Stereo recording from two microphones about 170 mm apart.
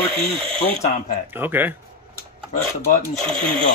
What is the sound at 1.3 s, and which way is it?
Speech, 10° right (ahead or behind).